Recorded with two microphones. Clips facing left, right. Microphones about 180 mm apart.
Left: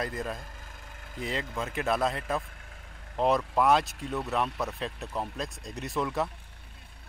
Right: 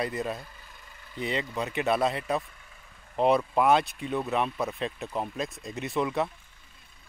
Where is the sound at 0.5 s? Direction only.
45° left (ahead or behind).